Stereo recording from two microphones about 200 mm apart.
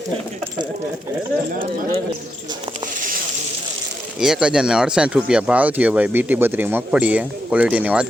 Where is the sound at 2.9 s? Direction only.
40° right (ahead or behind).